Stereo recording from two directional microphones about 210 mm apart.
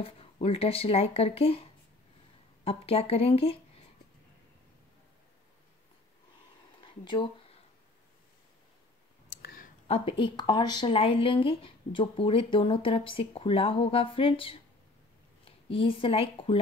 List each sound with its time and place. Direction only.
0.0 s speech: 25° left (ahead or behind)
6.8 s a sound: 25° left (ahead or behind)
9.3 s clicking: 45° left (ahead or behind)
9.8 s speech: 25° left (ahead or behind)